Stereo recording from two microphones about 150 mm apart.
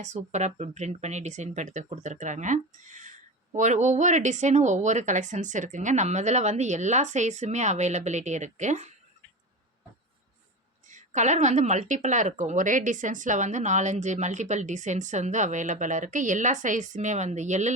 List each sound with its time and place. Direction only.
0.0 s speech: 50° right (ahead or behind)
10.8 s speech: 55° right (ahead or behind)